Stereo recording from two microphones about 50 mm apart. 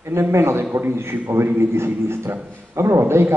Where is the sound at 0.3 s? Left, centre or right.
Right.